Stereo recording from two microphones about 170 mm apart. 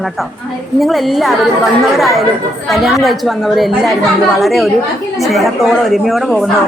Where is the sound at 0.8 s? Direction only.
Centre (ahead or behind).